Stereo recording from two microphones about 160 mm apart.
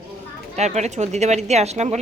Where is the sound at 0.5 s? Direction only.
45° right (ahead or behind).